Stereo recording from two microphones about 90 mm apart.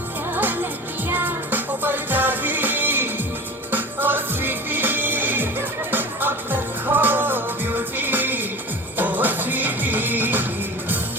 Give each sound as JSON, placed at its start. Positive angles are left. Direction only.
{"t": 0.3, "sound": "music", "side_deg": -20}